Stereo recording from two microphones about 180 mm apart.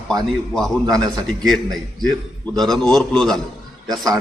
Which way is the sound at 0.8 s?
20° right (ahead or behind).